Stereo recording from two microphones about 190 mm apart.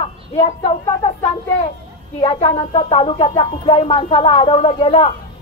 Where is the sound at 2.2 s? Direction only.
30° left (ahead or behind).